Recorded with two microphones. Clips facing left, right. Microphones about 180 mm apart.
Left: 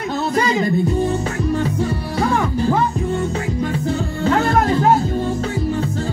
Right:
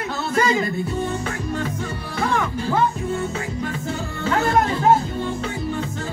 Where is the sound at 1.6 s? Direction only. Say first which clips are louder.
Left 6 dB; 35° left (ahead or behind).